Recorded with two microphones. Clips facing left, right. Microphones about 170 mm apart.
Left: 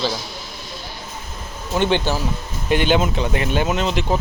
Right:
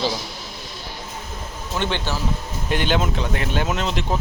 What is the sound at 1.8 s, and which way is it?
Speech, 15° left (ahead or behind).